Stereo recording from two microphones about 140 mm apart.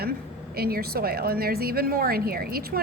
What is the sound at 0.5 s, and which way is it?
A woman's voice, 90° right.